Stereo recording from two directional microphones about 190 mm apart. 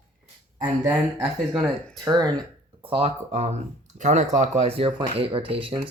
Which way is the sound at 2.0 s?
20° right (ahead or behind).